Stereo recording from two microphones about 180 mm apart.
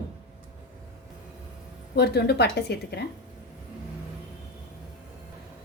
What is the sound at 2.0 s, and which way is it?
A woman's voice, 65° left (ahead or behind).